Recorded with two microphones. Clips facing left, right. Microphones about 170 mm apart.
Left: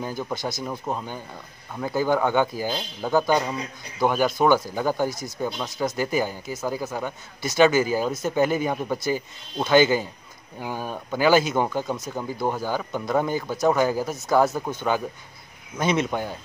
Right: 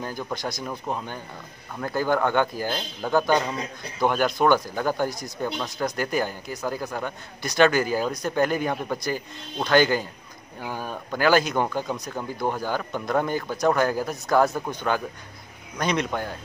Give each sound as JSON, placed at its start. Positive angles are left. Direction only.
{"t": 0.0, "sound": "a man's voice", "side_deg": 10}
{"t": 13.3, "sound": "a man's voice", "side_deg": 15}
{"t": 15.7, "sound": "a man's voice", "side_deg": 5}